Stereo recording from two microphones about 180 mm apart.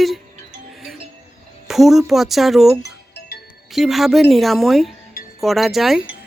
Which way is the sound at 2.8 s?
65° left (ahead or behind).